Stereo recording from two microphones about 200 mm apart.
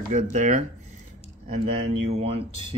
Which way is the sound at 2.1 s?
30° right (ahead or behind).